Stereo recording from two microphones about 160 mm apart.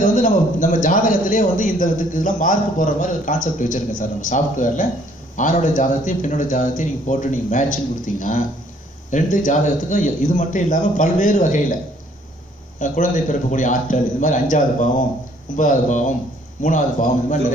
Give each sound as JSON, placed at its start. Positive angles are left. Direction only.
{"t": 0.0, "sound": "a man's voice", "side_deg": 55}
{"t": 12.7, "sound": "a man's voice", "side_deg": 50}